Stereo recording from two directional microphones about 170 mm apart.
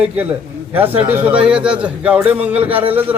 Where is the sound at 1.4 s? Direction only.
5° right (ahead or behind).